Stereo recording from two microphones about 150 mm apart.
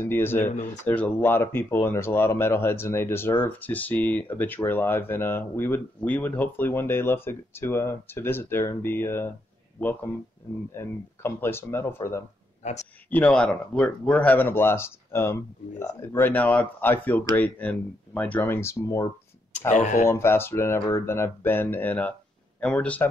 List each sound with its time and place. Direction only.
0.0 s speech: 15° left (ahead or behind)
13.1 s speech: 5° left (ahead or behind)
19.7 s speech: 55° left (ahead or behind)
20.1 s speech: 15° left (ahead or behind)